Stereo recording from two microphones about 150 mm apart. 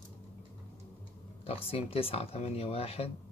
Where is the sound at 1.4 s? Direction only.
40° left (ahead or behind).